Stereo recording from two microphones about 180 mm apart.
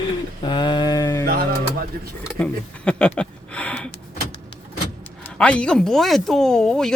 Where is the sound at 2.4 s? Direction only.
5° left (ahead or behind).